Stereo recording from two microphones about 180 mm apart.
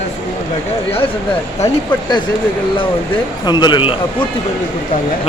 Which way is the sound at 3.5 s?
25° left (ahead or behind).